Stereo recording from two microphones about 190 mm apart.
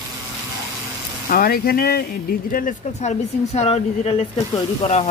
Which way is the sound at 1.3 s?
50° left (ahead or behind).